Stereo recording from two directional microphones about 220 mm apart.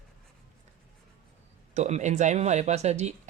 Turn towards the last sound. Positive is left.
turn(degrees=-30)  # may be behind; listen again after turning